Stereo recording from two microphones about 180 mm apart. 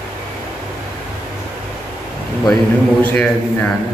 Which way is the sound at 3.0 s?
5° left (ahead or behind).